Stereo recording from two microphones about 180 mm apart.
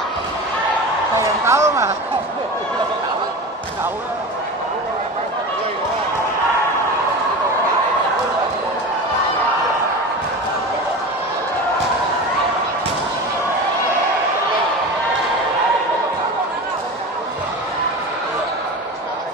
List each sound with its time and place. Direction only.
1.1 s a woman's voice: 15° right (ahead or behind)